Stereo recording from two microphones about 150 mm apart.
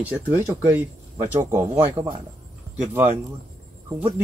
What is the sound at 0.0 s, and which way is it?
Speech, 10° right (ahead or behind).